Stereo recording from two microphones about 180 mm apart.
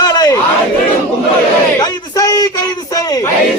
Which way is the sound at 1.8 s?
20° left (ahead or behind).